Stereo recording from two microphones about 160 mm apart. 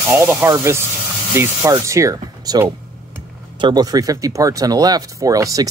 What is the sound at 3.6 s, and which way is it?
Speech, 25° right (ahead or behind).